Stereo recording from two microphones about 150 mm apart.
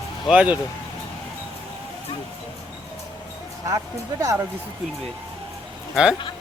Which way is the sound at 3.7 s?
20° right (ahead or behind).